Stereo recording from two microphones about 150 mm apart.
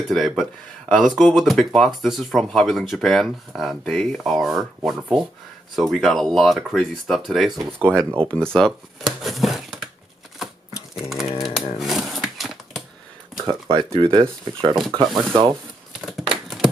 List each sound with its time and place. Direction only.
0.1 s speech: centre (ahead or behind)
8.2 s speech: 35° right (ahead or behind)
8.5 s speech: centre (ahead or behind)
11.3 s typewriter: centre (ahead or behind)
13.4 s speech: 30° right (ahead or behind)
15.0 s rub: 30° right (ahead or behind)